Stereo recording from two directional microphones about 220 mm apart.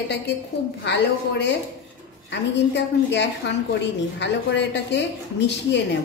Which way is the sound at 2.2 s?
55° left (ahead or behind).